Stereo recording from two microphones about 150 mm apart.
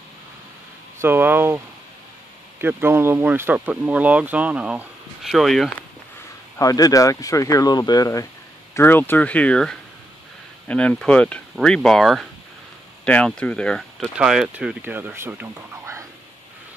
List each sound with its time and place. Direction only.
0.9 s speech: 15° right (ahead or behind)
2.6 s speech: 15° right (ahead or behind); by 5.7 s centre (ahead or behind)
6.6 s speech: 25° left (ahead or behind); by 16.1 s 15° right (ahead or behind)